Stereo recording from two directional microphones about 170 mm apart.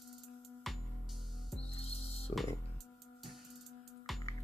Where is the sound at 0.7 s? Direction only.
Centre (ahead or behind).